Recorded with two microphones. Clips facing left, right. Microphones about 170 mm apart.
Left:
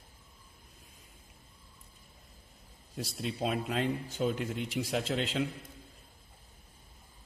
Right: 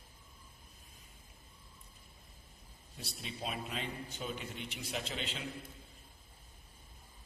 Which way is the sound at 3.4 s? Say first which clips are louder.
Left 9 dB; 90° left.